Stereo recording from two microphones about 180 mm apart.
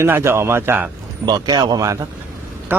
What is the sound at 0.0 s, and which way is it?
Speech, 15° right (ahead or behind).